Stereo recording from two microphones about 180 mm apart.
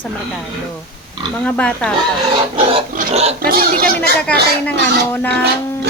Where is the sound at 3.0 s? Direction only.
35° right (ahead or behind).